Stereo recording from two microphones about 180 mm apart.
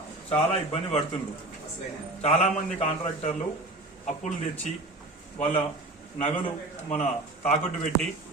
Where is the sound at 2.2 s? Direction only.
35° left (ahead or behind).